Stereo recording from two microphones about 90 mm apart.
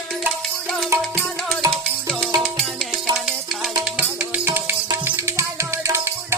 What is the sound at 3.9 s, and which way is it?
Music, 15° right (ahead or behind).